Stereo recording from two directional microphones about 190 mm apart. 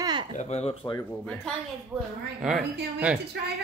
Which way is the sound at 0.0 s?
25° right (ahead or behind).